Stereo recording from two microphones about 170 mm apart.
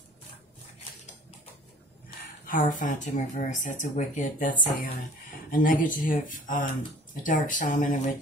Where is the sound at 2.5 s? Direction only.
50° left (ahead or behind).